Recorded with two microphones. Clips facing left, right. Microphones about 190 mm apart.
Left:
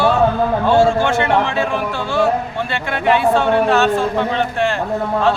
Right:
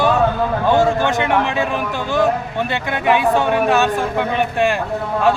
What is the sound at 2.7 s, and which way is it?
A man's voice, 15° right (ahead or behind).